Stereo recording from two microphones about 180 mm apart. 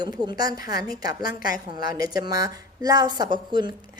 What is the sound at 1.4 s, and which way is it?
Speech, 50° left (ahead or behind).